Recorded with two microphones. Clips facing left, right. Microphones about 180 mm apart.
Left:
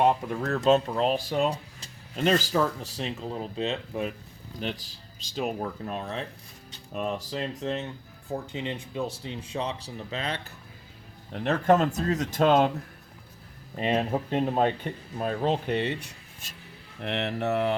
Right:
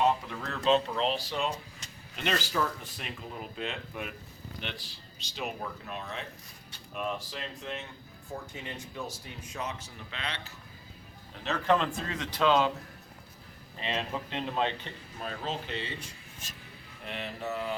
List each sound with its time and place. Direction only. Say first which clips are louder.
0.0 s speech: left 4 dB; 45° left (ahead or behind)
1.5 s speech: left 5 dB; 35° left (ahead or behind)
8.5 s speech: left 8 dB; 20° left (ahead or behind); by 10.5 s 45° left (ahead or behind)
11.3 s speech: left 5 dB; 60° left (ahead or behind)
13.7 s speech: left 8 dB; 45° left (ahead or behind); by 17.7 s 65° left (ahead or behind)